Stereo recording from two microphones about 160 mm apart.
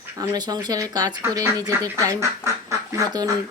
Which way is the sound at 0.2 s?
25° right (ahead or behind).